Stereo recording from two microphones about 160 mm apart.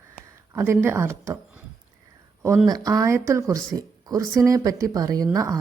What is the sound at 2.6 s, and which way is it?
Speech, 25° right (ahead or behind).